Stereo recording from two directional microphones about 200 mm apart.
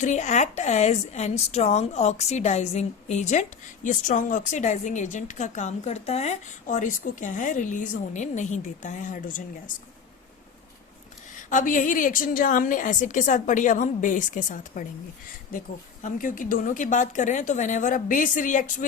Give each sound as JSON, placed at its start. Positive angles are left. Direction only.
{"t": 0.0, "sound": "a woman's voice", "side_deg": 35}
{"t": 11.4, "sound": "a woman's voice", "side_deg": 40}
{"t": 16.0, "sound": "a woman's voice", "side_deg": 40}